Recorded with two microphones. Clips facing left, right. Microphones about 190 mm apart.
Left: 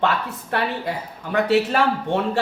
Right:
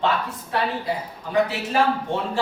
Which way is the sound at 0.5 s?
65° left (ahead or behind).